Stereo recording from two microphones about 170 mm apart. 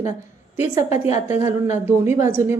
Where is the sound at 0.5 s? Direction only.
20° right (ahead or behind).